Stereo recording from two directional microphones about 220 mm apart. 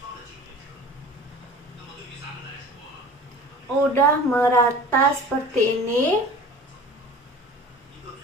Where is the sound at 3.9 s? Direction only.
10° left (ahead or behind).